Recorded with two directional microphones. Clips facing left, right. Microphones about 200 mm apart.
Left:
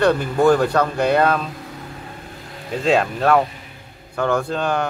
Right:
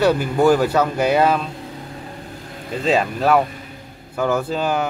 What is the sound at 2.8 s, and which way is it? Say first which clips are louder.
Speech: left 1 dB; centre (ahead or behind).